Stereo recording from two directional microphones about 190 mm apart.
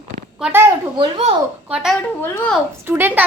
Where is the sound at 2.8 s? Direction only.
10° right (ahead or behind).